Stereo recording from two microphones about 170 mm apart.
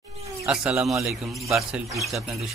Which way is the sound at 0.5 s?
5° right (ahead or behind).